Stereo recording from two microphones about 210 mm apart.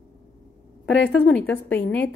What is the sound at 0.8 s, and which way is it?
A woman's voice, 60° left (ahead or behind).